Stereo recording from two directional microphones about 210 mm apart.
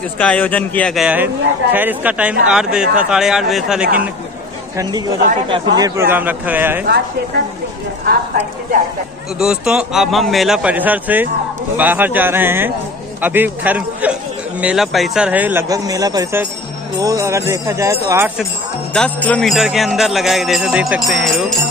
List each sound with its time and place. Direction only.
0.2 s a man's voice: 5° left (ahead or behind)
5.8 s speech: 15° right (ahead or behind)
8.0 s speech: 45° right (ahead or behind)
9.4 s a man's voice: 5° right (ahead or behind)
18.9 s a man's voice: 5° left (ahead or behind)